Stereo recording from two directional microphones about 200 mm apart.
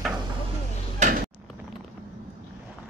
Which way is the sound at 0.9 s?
35° right (ahead or behind).